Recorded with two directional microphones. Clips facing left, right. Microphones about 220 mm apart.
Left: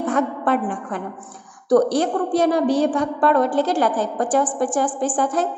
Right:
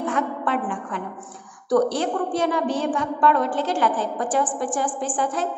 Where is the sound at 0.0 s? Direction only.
40° left (ahead or behind).